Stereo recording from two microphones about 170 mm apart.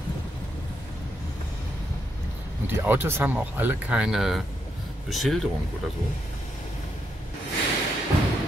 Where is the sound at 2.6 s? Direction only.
15° right (ahead or behind).